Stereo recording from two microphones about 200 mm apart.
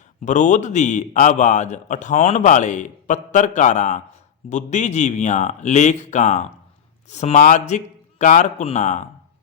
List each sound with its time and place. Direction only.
0.3 s a man's voice: 40° left (ahead or behind)